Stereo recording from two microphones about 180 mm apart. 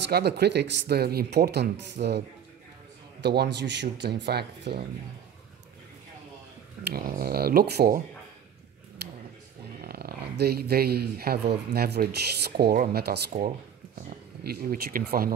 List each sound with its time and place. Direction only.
0.0 s speech: 65° right (ahead or behind)
6.8 s speech: 55° right (ahead or behind)
9.8 s speech: 55° right (ahead or behind)